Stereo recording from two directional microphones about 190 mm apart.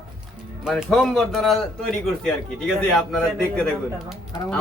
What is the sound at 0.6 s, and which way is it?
A man's voice, centre (ahead or behind).